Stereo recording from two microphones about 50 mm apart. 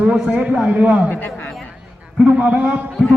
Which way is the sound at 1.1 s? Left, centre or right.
Left.